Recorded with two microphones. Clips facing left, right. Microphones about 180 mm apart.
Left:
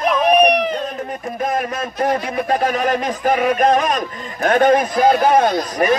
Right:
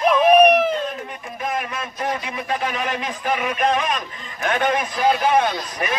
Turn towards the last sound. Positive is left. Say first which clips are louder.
# left 8 dB
turn(degrees=40)  # may be behind; listen again after turning